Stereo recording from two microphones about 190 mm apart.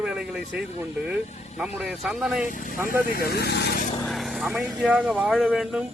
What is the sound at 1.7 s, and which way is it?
Speech, 5° right (ahead or behind).